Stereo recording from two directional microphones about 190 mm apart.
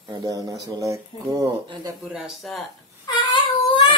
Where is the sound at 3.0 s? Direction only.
25° left (ahead or behind).